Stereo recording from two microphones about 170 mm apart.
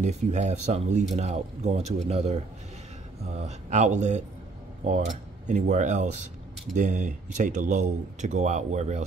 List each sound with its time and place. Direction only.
0.0 s speech: 45° right (ahead or behind)